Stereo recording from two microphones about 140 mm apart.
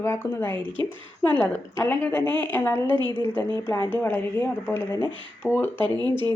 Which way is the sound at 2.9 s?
35° right (ahead or behind).